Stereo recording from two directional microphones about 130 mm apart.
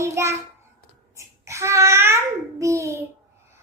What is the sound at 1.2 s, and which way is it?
Babbling, 20° right (ahead or behind).